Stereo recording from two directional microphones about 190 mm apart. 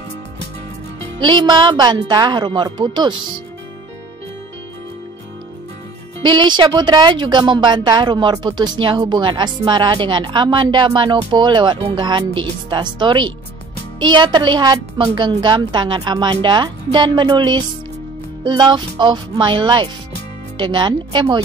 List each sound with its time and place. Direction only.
1.2 s a woman's voice: 25° right (ahead or behind)
6.2 s a woman's voice: 25° right (ahead or behind)